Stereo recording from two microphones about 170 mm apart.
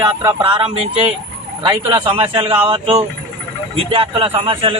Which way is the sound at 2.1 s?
30° right (ahead or behind).